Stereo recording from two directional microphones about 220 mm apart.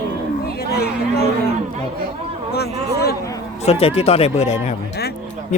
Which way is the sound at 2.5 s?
45° left (ahead or behind).